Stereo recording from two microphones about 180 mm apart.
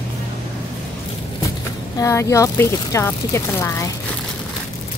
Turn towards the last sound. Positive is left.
turn(degrees=15)  # may be behind; listen again after turning